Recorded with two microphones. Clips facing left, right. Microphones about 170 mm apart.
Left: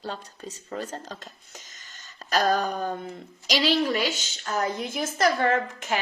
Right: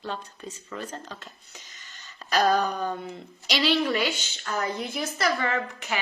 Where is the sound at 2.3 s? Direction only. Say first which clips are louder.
Right 1 dB; 40° left (ahead or behind).